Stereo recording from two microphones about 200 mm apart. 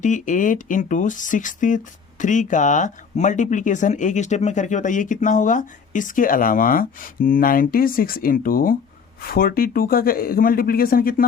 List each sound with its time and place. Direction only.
0.0 s speech: 40° left (ahead or behind)